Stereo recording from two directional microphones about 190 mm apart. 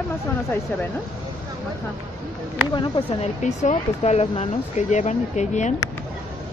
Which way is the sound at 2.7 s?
25° left (ahead or behind).